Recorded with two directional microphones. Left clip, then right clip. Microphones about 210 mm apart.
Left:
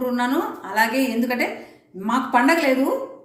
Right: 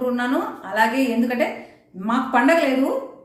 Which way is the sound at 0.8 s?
10° right (ahead or behind).